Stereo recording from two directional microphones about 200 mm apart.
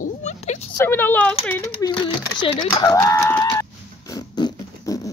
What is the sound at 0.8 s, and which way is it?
Speech, 10° left (ahead or behind).